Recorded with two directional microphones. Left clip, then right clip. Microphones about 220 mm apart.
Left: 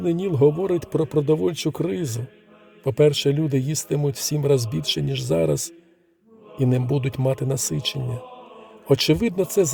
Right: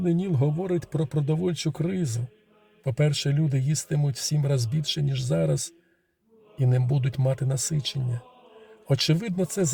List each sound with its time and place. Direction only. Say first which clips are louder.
0.0 s speech: left 9 dB; 35° left (ahead or behind)